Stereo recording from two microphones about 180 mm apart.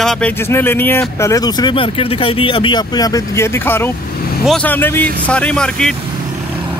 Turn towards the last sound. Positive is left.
turn(degrees=5)  # may be behind; listen again after turning